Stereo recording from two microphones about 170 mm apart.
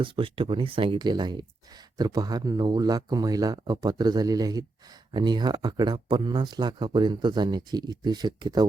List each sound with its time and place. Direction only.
0.0 s speech: 30° right (ahead or behind)